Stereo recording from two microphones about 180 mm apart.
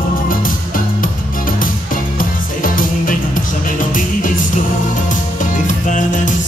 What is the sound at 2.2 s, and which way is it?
Music, 50° left (ahead or behind).